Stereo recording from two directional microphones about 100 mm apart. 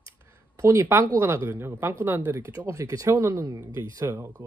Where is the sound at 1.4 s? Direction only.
25° right (ahead or behind).